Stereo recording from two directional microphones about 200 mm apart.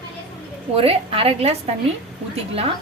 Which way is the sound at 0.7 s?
30° right (ahead or behind).